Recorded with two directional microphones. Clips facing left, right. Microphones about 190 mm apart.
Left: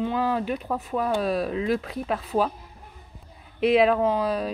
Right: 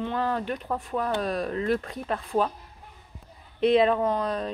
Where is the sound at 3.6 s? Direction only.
5° left (ahead or behind).